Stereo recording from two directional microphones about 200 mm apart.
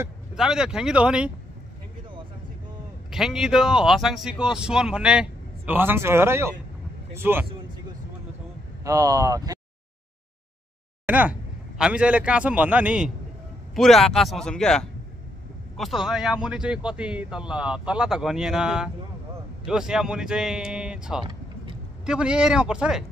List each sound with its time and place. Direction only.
0.4 s speech: 5° right (ahead or behind)
3.1 s speech: centre (ahead or behind)
8.8 s speech: 15° right (ahead or behind)
11.1 s speech: 10° right (ahead or behind)